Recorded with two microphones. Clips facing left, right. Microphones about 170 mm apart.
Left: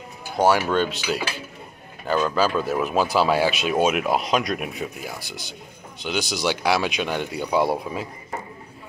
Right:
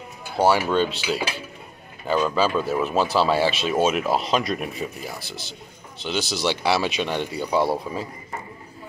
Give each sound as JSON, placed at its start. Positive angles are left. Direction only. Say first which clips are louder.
{"t": 0.4, "sound": "speech", "louder": "even", "side_deg": -5}
{"t": 0.8, "sound": "cutlery", "louder": "even", "side_deg": -35}
{"t": 2.0, "sound": "speech", "louder": "even", "side_deg": 0}